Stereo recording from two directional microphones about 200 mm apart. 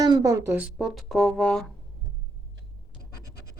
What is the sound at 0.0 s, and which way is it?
Speech, 20° right (ahead or behind).